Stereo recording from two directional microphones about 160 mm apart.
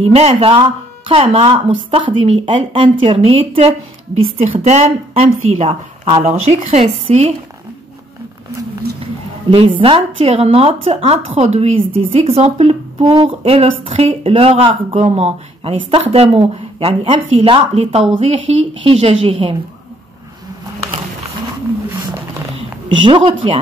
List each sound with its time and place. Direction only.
0.0 s speech: 40° right (ahead or behind)
9.5 s speech: 35° right (ahead or behind)
13.0 s speech: 30° right (ahead or behind)
23.0 s speech: 30° right (ahead or behind)